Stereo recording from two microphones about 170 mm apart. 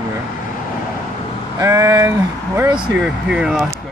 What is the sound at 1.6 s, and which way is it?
Speech, 20° right (ahead or behind).